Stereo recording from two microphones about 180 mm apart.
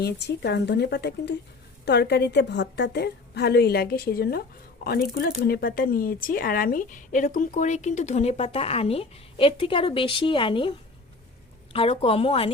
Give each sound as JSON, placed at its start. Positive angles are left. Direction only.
{"t": 0.0, "sound": "a woman's voice", "side_deg": 65}